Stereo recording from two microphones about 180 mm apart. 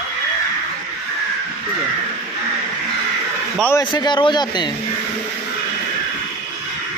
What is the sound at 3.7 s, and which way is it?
Speech, 25° left (ahead or behind).